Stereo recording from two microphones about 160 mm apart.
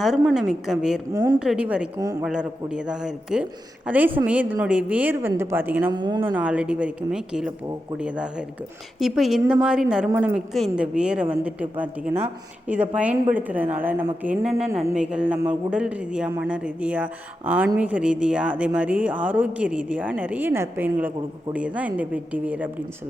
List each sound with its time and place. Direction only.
0.0 s a man's voice: 5° right (ahead or behind)
1.1 s speech: 25° right (ahead or behind)
1.4 s a man's voice: 5° right (ahead or behind)
5.9 s speech: 25° right (ahead or behind)
6.2 s a man's voice: 10° right (ahead or behind)